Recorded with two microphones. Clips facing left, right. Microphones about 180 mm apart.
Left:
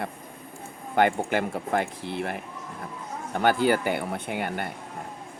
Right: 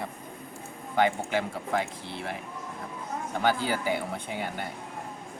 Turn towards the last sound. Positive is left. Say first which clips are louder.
# left 4 dB
turn(degrees=60)  # may be behind; listen again after turning